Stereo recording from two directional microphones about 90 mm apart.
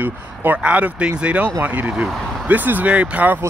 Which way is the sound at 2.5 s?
20° right (ahead or behind).